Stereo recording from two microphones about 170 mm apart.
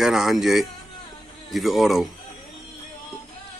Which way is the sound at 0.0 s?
Centre (ahead or behind).